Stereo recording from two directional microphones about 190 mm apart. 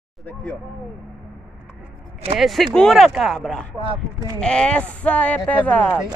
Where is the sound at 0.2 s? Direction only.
10° left (ahead or behind).